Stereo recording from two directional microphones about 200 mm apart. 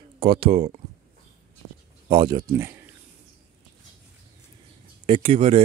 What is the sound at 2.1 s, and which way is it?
Speech, 20° right (ahead or behind).